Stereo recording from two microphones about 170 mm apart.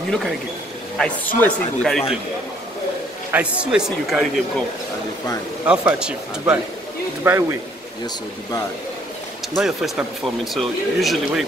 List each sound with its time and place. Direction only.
0.9 s a man's voice: 10° left (ahead or behind)
3.3 s speech: 5° right (ahead or behind)
5.7 s speech: 5° right (ahead or behind)
9.6 s speech: centre (ahead or behind)